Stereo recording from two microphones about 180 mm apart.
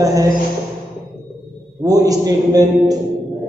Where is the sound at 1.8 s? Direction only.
20° right (ahead or behind).